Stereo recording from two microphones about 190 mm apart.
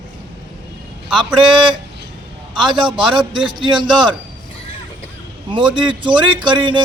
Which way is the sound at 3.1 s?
25° right (ahead or behind).